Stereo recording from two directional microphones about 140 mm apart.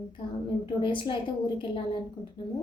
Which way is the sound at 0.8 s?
35° left (ahead or behind).